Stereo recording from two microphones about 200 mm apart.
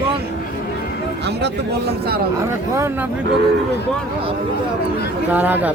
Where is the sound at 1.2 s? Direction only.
55° right (ahead or behind).